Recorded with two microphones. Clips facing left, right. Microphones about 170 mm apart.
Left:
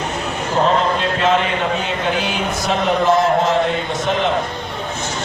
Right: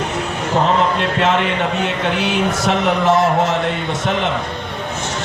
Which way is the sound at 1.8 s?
75° right (ahead or behind).